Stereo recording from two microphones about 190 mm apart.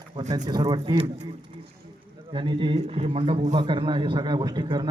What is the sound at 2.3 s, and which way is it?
A man's voice, 25° right (ahead or behind).